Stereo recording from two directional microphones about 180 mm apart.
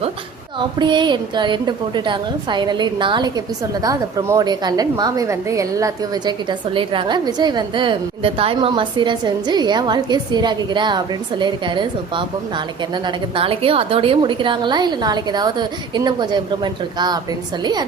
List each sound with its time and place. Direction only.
0.8 s a woman's voice: 25° right (ahead or behind)